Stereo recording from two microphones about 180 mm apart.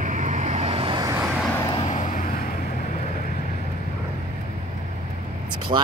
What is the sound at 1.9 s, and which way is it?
Vehicle, 50° left (ahead or behind).